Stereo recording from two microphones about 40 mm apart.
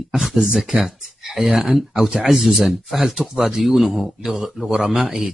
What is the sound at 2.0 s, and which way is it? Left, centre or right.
Speech, centre.